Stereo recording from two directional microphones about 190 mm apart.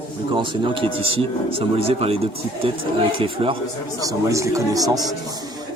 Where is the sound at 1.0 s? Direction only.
30° right (ahead or behind).